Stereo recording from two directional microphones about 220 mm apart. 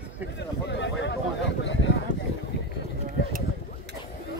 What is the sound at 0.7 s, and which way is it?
Speech, 50° left (ahead or behind).